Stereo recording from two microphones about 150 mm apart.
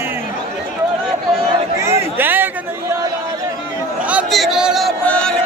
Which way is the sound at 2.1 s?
15° right (ahead or behind).